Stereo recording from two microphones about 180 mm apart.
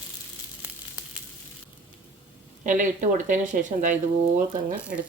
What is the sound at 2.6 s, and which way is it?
Speech, 45° right (ahead or behind).